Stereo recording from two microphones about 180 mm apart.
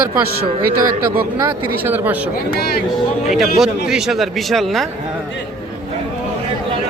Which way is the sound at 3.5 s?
Centre (ahead or behind).